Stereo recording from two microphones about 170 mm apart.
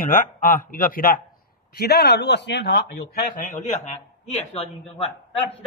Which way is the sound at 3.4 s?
45° left (ahead or behind).